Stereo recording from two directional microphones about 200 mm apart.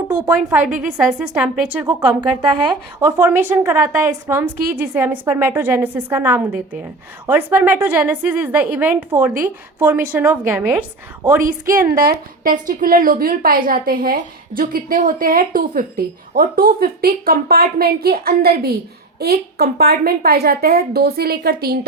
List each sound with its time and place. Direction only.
0.3 s a woman's voice: 5° right (ahead or behind)
3.0 s a woman's voice: 10° right (ahead or behind)
11.4 s a woman's voice: 45° right (ahead or behind)